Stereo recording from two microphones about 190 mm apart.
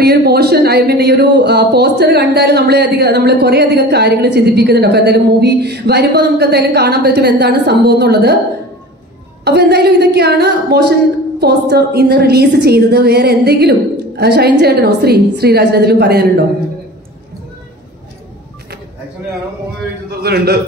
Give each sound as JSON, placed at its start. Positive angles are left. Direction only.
{"t": 0.0, "sound": "speech", "side_deg": -55}
{"t": 9.4, "sound": "speech", "side_deg": -60}
{"t": 20.1, "sound": "a man's voice", "side_deg": -60}